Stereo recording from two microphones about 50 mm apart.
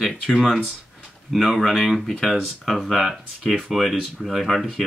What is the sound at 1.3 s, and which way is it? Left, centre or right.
Speech, centre.